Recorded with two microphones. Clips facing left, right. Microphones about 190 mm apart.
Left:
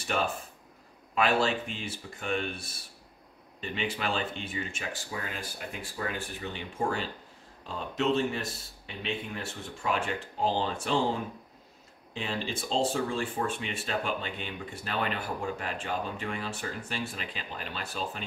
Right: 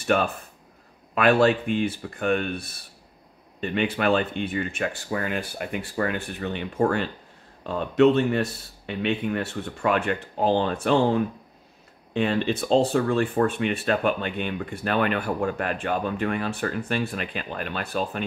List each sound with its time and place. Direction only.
0.0 s speech: 60° right (ahead or behind)